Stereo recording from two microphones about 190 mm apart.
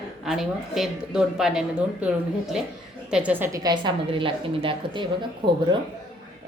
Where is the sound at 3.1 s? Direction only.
5° right (ahead or behind); by 5.0 s 25° right (ahead or behind).